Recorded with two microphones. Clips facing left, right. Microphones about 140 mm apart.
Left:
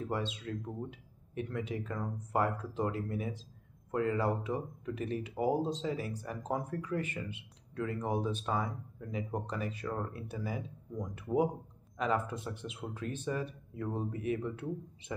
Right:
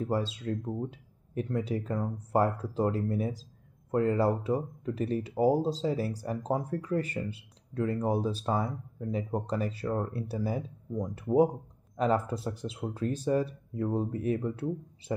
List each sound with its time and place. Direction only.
0.1 s speech: 35° right (ahead or behind)